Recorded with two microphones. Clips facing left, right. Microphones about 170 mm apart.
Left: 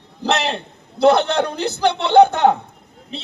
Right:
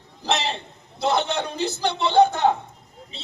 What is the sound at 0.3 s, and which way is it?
A man's voice, 70° left (ahead or behind).